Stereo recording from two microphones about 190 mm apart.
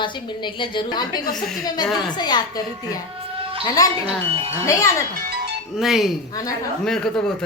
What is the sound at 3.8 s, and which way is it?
A woman's voice, 20° left (ahead or behind).